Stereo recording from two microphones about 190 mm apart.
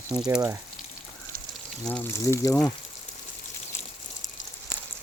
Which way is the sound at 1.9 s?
10° left (ahead or behind).